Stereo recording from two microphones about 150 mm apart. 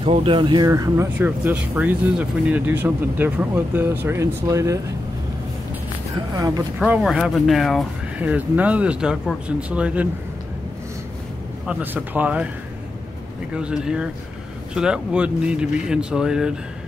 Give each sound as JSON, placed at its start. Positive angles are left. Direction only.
{"t": 0.0, "sound": "speech", "side_deg": -35}
{"t": 6.3, "sound": "speech", "side_deg": -25}
{"t": 7.0, "sound": "speech", "side_deg": -5}
{"t": 8.2, "sound": "speech", "side_deg": -10}
{"t": 11.6, "sound": "speech", "side_deg": -10}
{"t": 13.6, "sound": "speech", "side_deg": -5}